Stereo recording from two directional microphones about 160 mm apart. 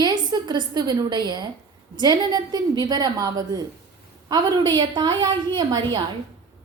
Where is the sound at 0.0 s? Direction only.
25° right (ahead or behind).